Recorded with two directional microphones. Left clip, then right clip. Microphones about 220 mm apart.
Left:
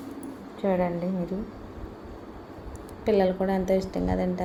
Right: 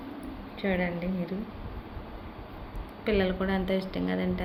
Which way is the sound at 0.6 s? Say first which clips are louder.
Left 4 dB; 10° left (ahead or behind).